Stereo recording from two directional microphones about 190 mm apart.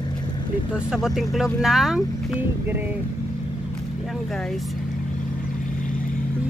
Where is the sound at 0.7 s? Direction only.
5° right (ahead or behind).